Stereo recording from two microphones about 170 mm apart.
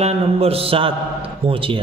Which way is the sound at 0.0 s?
35° right (ahead or behind).